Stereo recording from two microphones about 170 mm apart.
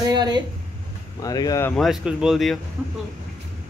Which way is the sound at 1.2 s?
20° left (ahead or behind).